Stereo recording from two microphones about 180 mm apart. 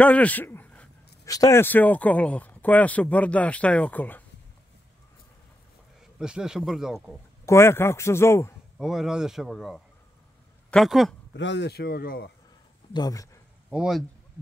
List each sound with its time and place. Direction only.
0.0 s a man's voice: 10° left (ahead or behind)
6.1 s a man's voice: 5° right (ahead or behind)
7.4 s a man's voice: 15° left (ahead or behind)
8.7 s a man's voice: centre (ahead or behind)
11.3 s speech: 80° left; by 12.3 s 55° left (ahead or behind)
12.9 s speech: 20° left (ahead or behind)
13.7 s speech: 5° right (ahead or behind)